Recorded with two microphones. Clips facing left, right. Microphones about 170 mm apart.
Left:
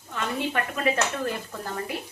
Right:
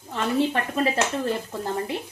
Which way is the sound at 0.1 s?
30° right (ahead or behind).